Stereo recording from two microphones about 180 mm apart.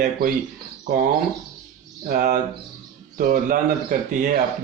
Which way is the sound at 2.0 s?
50° right (ahead or behind).